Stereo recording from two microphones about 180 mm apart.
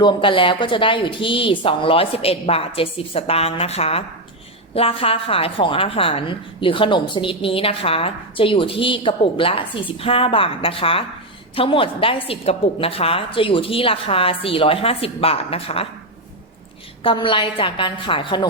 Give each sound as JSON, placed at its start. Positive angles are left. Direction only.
{"t": 0.0, "sound": "a woman's voice", "side_deg": 25}
{"t": 17.0, "sound": "speech", "side_deg": 30}